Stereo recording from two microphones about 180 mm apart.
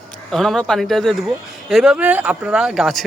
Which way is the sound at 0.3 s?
Centre (ahead or behind).